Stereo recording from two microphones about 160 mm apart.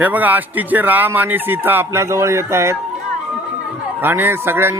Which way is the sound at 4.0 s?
15° right (ahead or behind).